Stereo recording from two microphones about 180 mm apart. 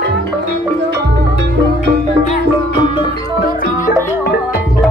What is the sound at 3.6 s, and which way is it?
Music, 45° left (ahead or behind).